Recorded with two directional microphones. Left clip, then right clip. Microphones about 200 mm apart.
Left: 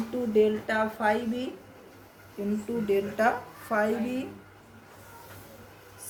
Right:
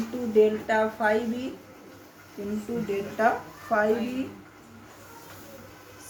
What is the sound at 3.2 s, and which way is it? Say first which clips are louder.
Speech: right 2 dB; 60° left (ahead or behind).